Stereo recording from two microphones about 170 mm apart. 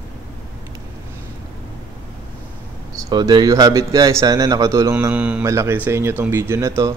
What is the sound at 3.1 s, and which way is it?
A man's voice, 25° right (ahead or behind).